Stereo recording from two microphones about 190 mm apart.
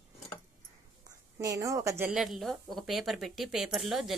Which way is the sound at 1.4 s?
15° right (ahead or behind).